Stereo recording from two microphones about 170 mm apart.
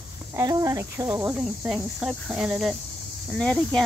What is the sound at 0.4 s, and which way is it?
Speech, 20° right (ahead or behind).